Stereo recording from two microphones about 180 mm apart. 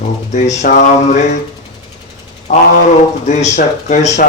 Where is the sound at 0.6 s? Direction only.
40° left (ahead or behind).